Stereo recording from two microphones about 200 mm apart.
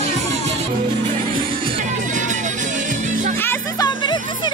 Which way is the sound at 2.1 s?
40° right (ahead or behind).